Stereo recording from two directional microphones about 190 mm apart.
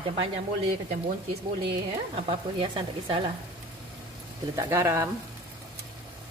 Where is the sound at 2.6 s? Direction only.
25° right (ahead or behind).